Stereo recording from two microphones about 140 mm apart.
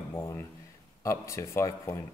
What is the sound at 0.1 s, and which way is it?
A man's voice, 20° left (ahead or behind).